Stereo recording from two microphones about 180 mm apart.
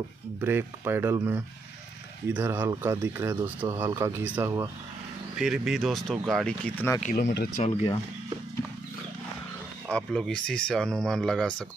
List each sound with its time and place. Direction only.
0.4 s speech: 10° right (ahead or behind)
5.4 s speech: 5° right (ahead or behind)
7.0 s speech: 50° left (ahead or behind)
7.5 s speech: 35° left (ahead or behind)
9.8 s speech: 5° left (ahead or behind)